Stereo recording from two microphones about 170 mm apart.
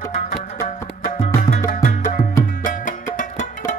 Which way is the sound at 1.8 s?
50° left (ahead or behind).